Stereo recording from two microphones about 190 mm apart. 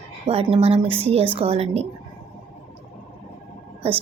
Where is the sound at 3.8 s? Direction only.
30° right (ahead or behind).